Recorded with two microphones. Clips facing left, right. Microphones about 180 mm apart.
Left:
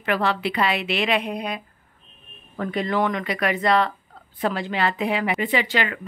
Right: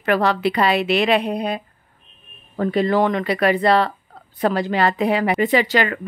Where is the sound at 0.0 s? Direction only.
40° right (ahead or behind).